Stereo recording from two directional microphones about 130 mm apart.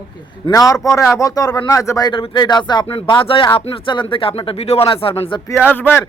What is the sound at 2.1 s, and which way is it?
Speech, 35° left (ahead or behind).